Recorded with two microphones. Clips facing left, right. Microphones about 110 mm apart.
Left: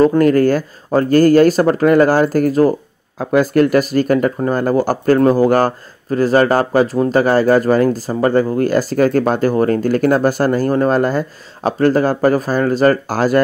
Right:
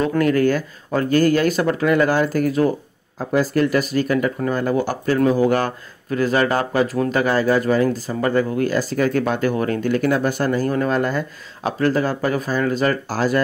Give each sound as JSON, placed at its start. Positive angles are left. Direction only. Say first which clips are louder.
{"t": 0.0, "sound": "speech", "louder": "left 6 dB", "side_deg": 40}
{"t": 3.2, "sound": "speech", "louder": "left 6 dB", "side_deg": 65}